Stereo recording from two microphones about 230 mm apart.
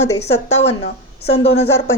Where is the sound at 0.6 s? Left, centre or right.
Left.